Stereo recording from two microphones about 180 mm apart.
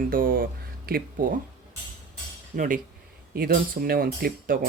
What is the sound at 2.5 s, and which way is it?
Speech, 45° right (ahead or behind).